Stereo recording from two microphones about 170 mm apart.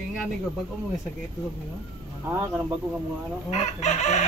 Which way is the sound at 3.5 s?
40° left (ahead or behind).